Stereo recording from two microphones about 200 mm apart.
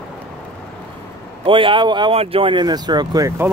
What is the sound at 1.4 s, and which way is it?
Speech, 25° right (ahead or behind).